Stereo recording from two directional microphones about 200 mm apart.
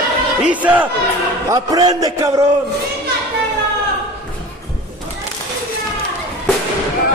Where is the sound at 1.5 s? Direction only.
20° right (ahead or behind).